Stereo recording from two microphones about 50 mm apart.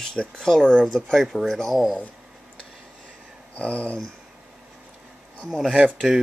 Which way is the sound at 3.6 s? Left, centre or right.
Left.